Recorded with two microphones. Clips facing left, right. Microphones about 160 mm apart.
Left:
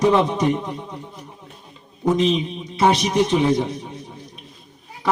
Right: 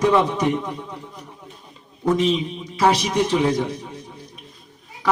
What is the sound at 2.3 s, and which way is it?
A man's voice, 25° left (ahead or behind).